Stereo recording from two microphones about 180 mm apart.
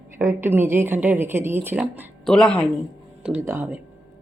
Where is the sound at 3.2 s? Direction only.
10° right (ahead or behind).